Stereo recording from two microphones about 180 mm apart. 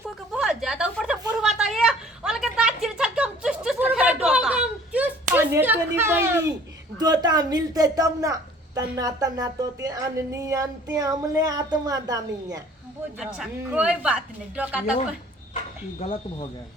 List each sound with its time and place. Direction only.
0.0 s a sound: 5° right (ahead or behind)
6.9 s a woman's voice: 20° right (ahead or behind)
13.1 s speech: 5° right (ahead or behind)